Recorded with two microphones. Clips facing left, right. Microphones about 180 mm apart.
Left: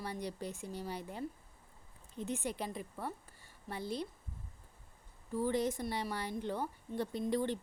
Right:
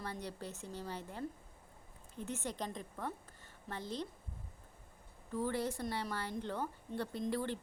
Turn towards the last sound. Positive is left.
turn(degrees=15)  # may be behind; listen again after turning